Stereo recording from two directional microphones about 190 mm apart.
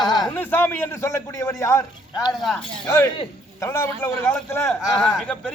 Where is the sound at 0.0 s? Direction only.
20° left (ahead or behind).